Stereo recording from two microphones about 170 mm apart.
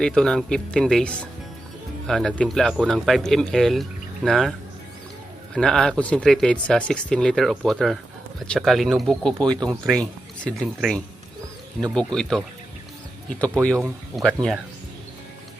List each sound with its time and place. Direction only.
0.0 s speech: 5° left (ahead or behind)
5.5 s speech: 5° left (ahead or behind)
13.4 s speech: 5° left (ahead or behind)